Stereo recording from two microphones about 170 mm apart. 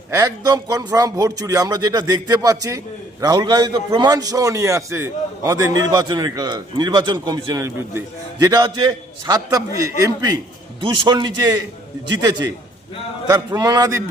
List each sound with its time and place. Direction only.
0.1 s a man's voice: 20° right (ahead or behind)
13.2 s a man's voice: 20° right (ahead or behind)